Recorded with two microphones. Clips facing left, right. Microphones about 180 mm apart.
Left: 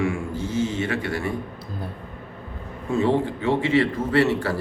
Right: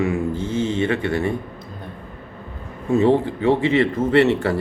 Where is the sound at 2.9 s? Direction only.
15° right (ahead or behind).